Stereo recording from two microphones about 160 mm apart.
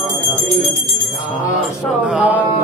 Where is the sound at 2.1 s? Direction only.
10° right (ahead or behind).